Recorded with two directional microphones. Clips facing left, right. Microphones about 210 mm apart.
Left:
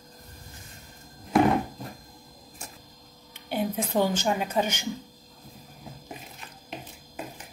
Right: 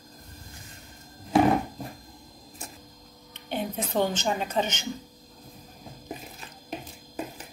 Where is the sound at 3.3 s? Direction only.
10° left (ahead or behind).